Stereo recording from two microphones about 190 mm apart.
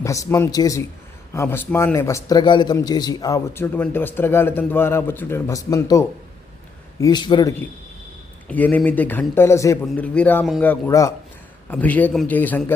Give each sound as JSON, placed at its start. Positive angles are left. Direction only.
{"t": 0.0, "sound": "a man's voice", "side_deg": 15}
{"t": 8.4, "sound": "a man's voice", "side_deg": 10}